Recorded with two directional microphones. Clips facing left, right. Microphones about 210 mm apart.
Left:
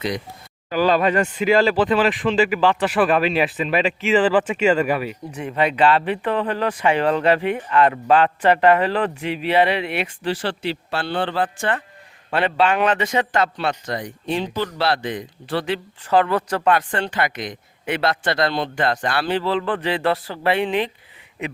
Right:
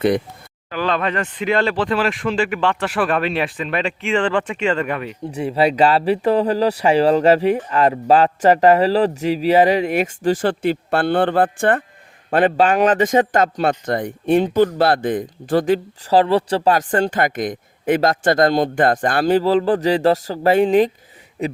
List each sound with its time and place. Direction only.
0.7 s speech: 5° left (ahead or behind)
5.3 s speech: 35° right (ahead or behind); by 11.8 s 55° right (ahead or behind)
12.3 s speech: 45° right (ahead or behind)